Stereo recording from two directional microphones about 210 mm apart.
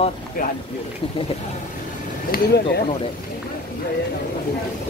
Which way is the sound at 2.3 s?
50° left (ahead or behind).